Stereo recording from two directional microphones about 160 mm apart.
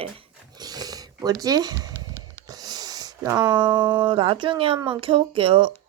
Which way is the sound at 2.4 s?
25° right (ahead or behind).